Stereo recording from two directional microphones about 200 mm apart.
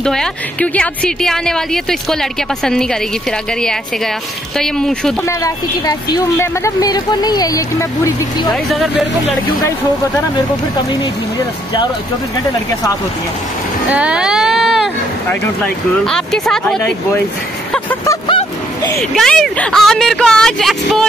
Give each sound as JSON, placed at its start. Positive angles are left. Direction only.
{"t": 0.0, "sound": "speech", "side_deg": 5}
{"t": 5.4, "sound": "speech", "side_deg": 15}
{"t": 8.6, "sound": "speech", "side_deg": 0}
{"t": 13.8, "sound": "speech", "side_deg": -5}
{"t": 17.7, "sound": "vehicle", "side_deg": 10}
{"t": 18.9, "sound": "speech", "side_deg": 0}